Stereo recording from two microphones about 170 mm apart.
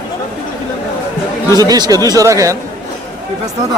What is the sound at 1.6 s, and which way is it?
Speech, 20° right (ahead or behind).